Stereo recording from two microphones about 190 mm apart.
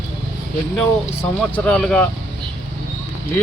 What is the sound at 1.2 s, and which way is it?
Speech, 5° left (ahead or behind).